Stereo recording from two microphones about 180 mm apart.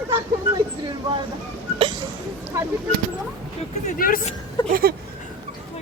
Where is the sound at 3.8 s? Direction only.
50° left (ahead or behind).